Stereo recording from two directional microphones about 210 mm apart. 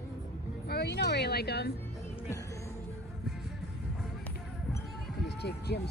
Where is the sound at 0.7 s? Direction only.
55° left (ahead or behind).